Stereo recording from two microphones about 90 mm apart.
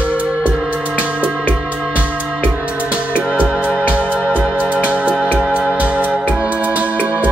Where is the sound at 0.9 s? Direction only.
15° right (ahead or behind).